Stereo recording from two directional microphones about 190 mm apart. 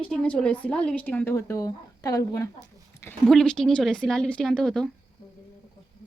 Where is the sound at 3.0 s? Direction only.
10° left (ahead or behind).